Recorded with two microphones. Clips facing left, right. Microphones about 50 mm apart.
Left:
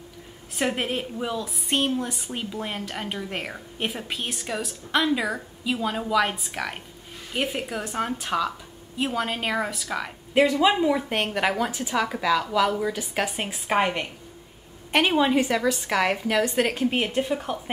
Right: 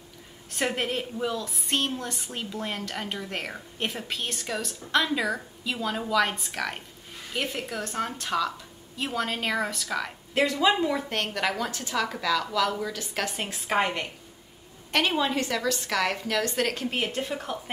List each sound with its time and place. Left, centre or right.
0.6 s a woman's voice: centre